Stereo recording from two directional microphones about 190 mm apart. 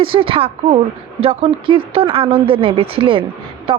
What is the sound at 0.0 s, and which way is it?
A woman's voice, 30° right (ahead or behind).